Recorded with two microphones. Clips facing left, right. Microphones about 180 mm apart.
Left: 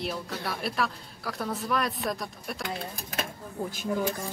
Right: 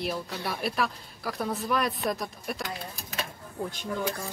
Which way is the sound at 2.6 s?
50° left (ahead or behind).